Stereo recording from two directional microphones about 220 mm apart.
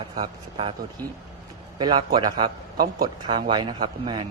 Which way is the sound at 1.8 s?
20° right (ahead or behind).